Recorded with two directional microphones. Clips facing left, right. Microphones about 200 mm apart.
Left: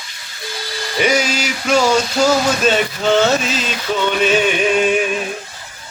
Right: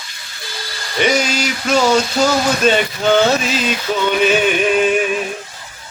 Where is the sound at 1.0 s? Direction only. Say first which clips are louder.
Right 1 dB; 5° left (ahead or behind).